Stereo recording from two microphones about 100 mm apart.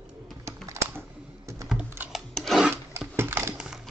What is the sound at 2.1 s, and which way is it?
Rub, centre (ahead or behind).